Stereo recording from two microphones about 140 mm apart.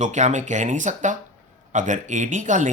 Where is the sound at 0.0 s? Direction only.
55° right (ahead or behind).